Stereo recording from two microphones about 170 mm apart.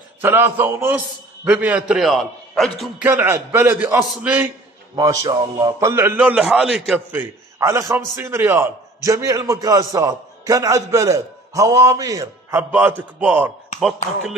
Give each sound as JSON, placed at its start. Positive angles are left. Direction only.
{"t": 0.2, "sound": "a man's voice", "side_deg": -15}
{"t": 3.1, "sound": "a man's voice", "side_deg": -15}
{"t": 4.9, "sound": "a man's voice", "side_deg": -20}
{"t": 6.1, "sound": "a man's voice", "side_deg": -5}
{"t": 13.7, "sound": "chopping", "side_deg": 0}